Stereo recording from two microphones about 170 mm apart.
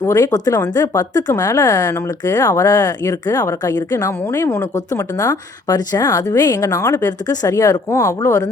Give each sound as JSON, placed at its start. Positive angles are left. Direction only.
{"t": 0.0, "sound": "speech", "side_deg": 20}